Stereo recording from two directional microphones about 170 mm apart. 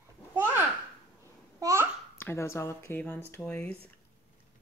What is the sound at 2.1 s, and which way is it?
Speech, 15° left (ahead or behind).